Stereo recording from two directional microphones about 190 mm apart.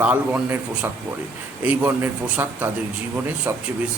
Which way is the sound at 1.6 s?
10° right (ahead or behind).